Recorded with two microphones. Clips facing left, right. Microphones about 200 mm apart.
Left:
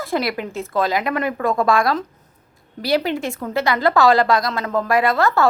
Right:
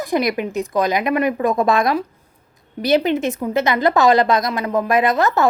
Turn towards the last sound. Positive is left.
turn(degrees=-20)  # may be behind; listen again after turning